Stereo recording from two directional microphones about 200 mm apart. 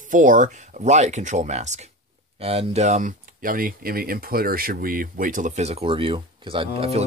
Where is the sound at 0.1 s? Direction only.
40° right (ahead or behind).